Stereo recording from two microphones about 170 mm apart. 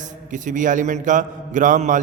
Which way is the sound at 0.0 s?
50° right (ahead or behind).